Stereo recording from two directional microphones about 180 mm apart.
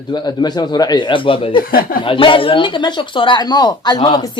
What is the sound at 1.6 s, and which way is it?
Speech, 55° left (ahead or behind).